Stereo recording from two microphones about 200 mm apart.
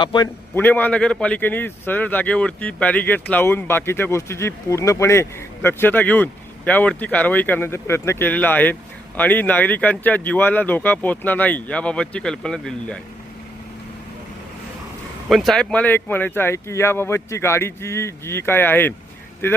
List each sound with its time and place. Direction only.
0.0 s a man's voice: 25° left (ahead or behind)
0.5 s a man's voice: 10° left (ahead or behind)
15.3 s a man's voice: centre (ahead or behind)